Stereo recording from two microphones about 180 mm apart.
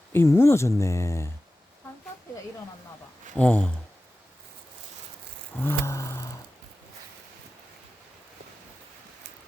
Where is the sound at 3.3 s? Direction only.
5° left (ahead or behind).